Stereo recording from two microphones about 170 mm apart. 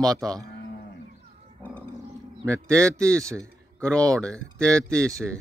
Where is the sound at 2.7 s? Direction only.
20° right (ahead or behind).